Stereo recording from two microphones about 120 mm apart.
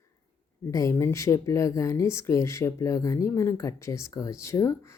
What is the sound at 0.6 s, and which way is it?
Speech, 25° left (ahead or behind).